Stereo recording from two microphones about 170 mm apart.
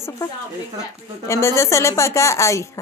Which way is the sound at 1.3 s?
15° left (ahead or behind).